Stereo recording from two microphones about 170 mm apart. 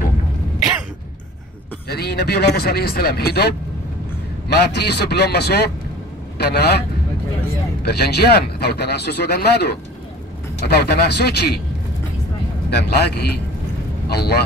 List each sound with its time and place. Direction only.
1.9 s a man's voice: 70° left (ahead or behind)
7.8 s speech: 70° left (ahead or behind)
12.6 s speech: 75° left (ahead or behind)